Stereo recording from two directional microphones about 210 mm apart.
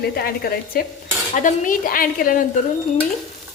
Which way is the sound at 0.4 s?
45° left (ahead or behind).